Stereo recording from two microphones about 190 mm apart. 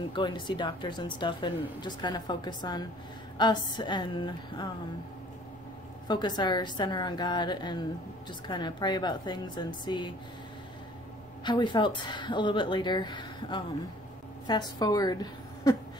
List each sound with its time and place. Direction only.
0.1 s speech: 25° left (ahead or behind)
6.0 s speech: 25° left (ahead or behind)
11.4 s speech: 25° left (ahead or behind)